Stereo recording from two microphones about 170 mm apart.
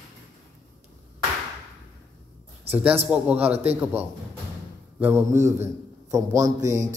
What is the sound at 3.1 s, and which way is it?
A man's voice, 5° right (ahead or behind).